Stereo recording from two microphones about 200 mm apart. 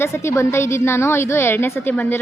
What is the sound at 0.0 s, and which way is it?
A woman's voice, 15° left (ahead or behind).